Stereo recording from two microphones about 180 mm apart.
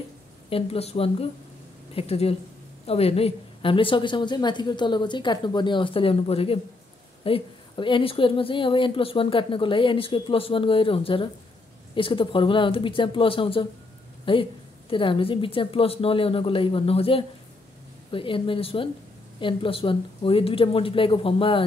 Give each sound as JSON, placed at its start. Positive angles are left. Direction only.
{"t": 0.5, "sound": "a woman's voice", "side_deg": 35}